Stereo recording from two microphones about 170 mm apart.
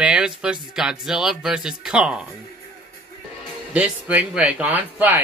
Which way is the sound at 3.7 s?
10° right (ahead or behind).